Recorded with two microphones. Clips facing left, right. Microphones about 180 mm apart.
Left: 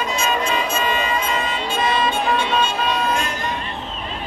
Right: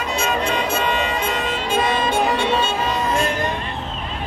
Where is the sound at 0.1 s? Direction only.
60° right (ahead or behind).